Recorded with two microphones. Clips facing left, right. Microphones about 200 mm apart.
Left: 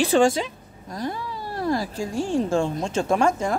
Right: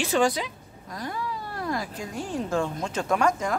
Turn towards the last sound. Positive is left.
turn(degrees=25)  # may be behind; listen again after turning